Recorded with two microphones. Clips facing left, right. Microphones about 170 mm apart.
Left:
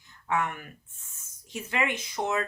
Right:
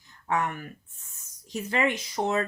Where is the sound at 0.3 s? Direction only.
35° right (ahead or behind).